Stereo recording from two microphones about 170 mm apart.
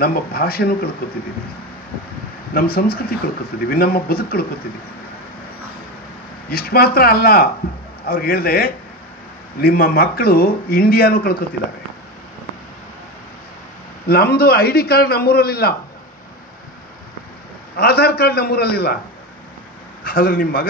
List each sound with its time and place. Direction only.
0.0 s a man's voice: 60° left (ahead or behind)
2.5 s a man's voice: 60° left (ahead or behind)
6.5 s a man's voice: 65° left (ahead or behind)
14.0 s a man's voice: 65° left (ahead or behind)
17.7 s a man's voice: 70° left (ahead or behind)
20.0 s a man's voice: 60° left (ahead or behind)